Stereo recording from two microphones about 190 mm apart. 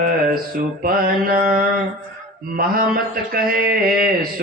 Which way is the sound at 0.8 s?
50° right (ahead or behind).